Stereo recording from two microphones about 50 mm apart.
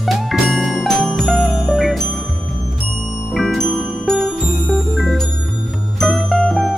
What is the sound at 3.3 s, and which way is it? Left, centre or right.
Music, centre.